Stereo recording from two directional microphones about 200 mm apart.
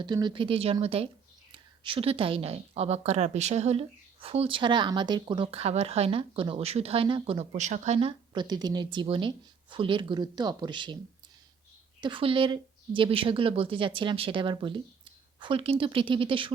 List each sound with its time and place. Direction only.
0.0 s a woman's voice: 20° right (ahead or behind)
11.9 s a woman's voice: 25° right (ahead or behind)